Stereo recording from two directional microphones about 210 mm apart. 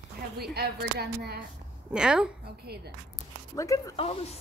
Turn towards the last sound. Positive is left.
turn(degrees=30)  # may be behind; listen again after turning